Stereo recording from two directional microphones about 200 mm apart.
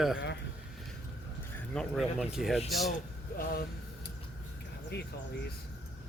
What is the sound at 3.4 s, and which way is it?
Vehicle, 45° left (ahead or behind).